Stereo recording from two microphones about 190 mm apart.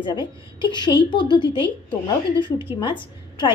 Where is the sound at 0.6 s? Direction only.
25° left (ahead or behind).